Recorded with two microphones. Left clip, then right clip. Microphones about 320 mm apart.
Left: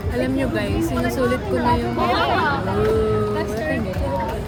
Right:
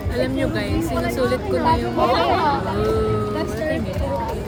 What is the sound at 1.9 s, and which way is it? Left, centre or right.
Music, right.